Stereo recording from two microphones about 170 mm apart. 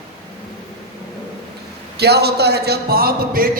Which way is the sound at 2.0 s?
70° right (ahead or behind).